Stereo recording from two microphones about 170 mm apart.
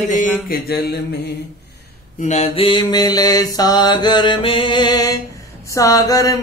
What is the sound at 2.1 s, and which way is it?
Mantra, 40° left (ahead or behind).